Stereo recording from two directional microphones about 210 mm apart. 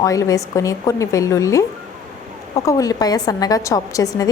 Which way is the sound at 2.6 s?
15° left (ahead or behind).